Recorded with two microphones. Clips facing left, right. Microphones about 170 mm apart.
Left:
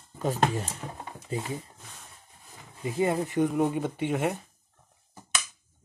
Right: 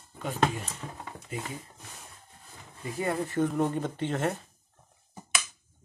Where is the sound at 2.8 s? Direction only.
20° left (ahead or behind).